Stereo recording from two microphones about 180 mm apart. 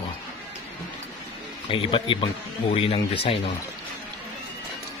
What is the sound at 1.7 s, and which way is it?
Speech, 30° left (ahead or behind).